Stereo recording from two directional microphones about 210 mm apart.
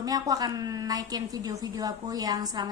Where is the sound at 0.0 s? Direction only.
15° right (ahead or behind).